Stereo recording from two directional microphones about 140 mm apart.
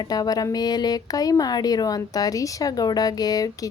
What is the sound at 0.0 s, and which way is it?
Speech, 25° left (ahead or behind).